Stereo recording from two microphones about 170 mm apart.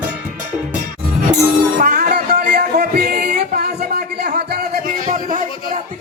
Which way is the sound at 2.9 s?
65° right (ahead or behind).